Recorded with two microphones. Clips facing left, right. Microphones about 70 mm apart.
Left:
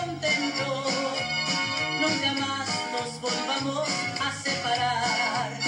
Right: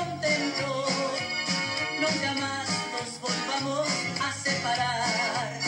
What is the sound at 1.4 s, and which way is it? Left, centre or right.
Organ, left.